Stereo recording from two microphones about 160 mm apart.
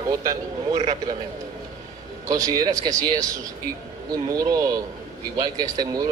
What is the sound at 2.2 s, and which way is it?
Speech, 20° right (ahead or behind).